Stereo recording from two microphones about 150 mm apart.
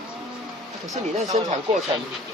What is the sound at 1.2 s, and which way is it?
Speech, 50° right (ahead or behind).